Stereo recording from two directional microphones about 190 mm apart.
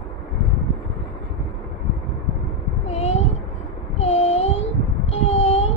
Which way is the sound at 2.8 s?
35° left (ahead or behind).